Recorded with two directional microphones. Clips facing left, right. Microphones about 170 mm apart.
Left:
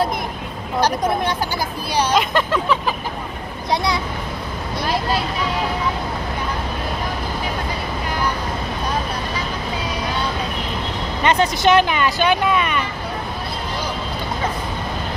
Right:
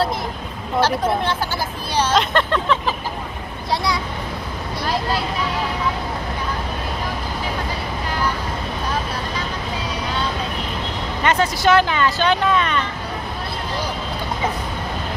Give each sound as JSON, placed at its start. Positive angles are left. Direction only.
{"t": 0.7, "sound": "speech", "side_deg": 15}
{"t": 3.7, "sound": "a child's voice", "side_deg": 20}
{"t": 11.2, "sound": "speech", "side_deg": 20}